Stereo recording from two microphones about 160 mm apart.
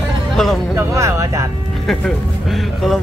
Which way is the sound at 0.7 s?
20° right (ahead or behind).